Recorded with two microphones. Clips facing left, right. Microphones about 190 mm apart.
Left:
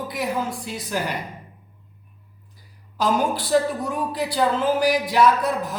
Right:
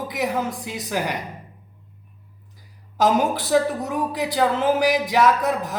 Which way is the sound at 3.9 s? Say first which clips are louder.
Right 3 dB; 15° right (ahead or behind).